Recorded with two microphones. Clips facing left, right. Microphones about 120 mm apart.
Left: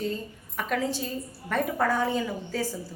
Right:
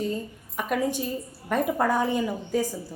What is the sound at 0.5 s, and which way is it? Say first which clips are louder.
A woman's voice: right 2 dB; 15° right (ahead or behind).